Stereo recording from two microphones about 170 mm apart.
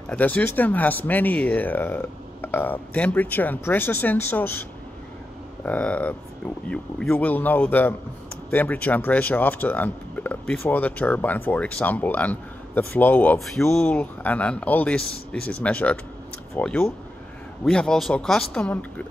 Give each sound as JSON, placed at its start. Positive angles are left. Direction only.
{"t": 0.1, "sound": "speech", "side_deg": 10}
{"t": 5.7, "sound": "speech", "side_deg": 10}